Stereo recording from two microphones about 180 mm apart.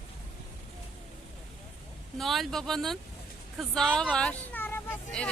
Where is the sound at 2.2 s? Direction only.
Centre (ahead or behind).